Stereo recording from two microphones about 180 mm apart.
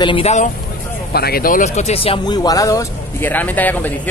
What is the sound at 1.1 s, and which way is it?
Speech, 60° left (ahead or behind).